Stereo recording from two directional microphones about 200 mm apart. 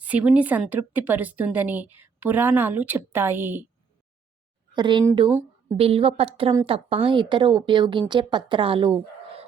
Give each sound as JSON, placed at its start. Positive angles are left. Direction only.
{"t": 0.0, "sound": "a woman's voice", "side_deg": -5}
{"t": 4.7, "sound": "a woman's voice", "side_deg": -25}